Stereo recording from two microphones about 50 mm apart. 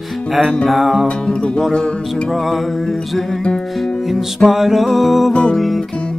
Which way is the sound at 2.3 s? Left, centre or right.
Centre.